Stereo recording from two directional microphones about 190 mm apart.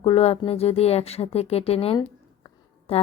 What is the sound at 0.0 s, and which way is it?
Speech, 30° left (ahead or behind).